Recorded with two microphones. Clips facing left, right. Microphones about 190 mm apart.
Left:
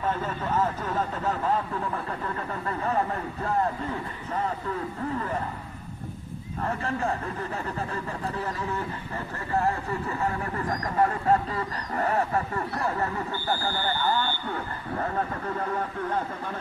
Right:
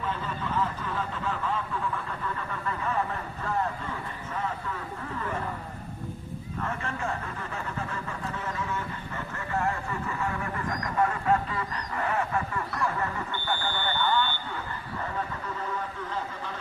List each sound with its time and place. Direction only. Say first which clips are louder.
0.1 s speech: left 4 dB; 45° left (ahead or behind)
6.6 s speech: left 5 dB; 35° left (ahead or behind)
10.2 s speech: left 3 dB; 35° left (ahead or behind)